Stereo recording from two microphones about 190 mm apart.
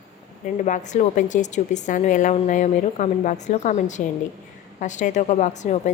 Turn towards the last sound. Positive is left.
turn(degrees=40)  # may be behind; listen again after turning